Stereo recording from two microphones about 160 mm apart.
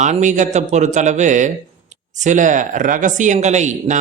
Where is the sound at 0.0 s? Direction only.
50° right (ahead or behind).